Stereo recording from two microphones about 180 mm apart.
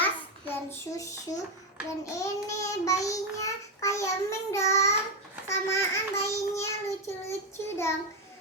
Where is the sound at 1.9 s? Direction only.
15° left (ahead or behind).